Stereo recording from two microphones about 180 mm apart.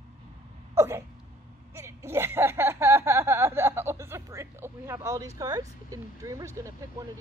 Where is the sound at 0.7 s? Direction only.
15° right (ahead or behind).